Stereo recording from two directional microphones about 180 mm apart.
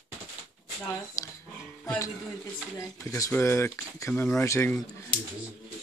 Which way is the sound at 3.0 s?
15° left (ahead or behind).